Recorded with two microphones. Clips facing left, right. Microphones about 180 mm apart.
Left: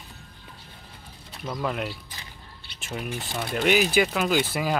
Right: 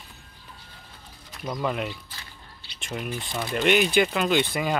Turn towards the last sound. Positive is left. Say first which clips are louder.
# right 1 dB
turn(degrees=5)  # may be behind; listen again after turning